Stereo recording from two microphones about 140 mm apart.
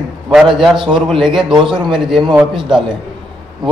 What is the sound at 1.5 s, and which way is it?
Speech, 35° right (ahead or behind).